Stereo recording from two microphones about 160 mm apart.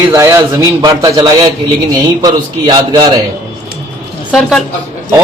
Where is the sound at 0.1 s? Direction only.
20° right (ahead or behind).